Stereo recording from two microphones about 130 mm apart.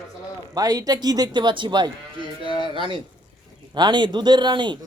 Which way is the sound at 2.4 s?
40° left (ahead or behind).